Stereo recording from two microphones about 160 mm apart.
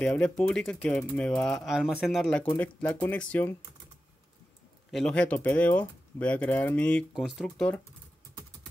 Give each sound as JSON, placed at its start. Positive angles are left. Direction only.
{"t": 0.0, "sound": "speech", "side_deg": 5}
{"t": 4.9, "sound": "speech", "side_deg": 5}